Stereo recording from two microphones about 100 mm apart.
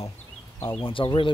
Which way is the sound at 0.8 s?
60° left (ahead or behind).